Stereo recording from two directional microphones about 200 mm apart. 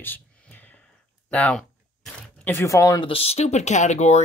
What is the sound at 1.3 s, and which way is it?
Speech, 5° left (ahead or behind).